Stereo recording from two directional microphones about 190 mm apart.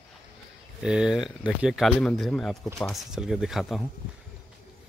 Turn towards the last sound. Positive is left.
turn(degrees=0)  # may be behind; listen again after turning